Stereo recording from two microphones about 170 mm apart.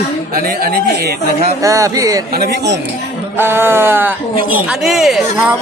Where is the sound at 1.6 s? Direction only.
20° right (ahead or behind).